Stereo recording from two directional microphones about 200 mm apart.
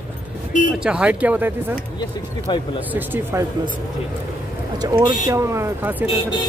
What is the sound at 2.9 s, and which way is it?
Speech, 10° right (ahead or behind).